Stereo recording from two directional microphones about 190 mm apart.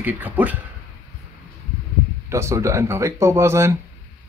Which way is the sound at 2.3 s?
15° right (ahead or behind).